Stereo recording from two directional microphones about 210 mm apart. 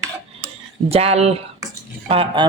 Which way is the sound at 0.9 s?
30° right (ahead or behind).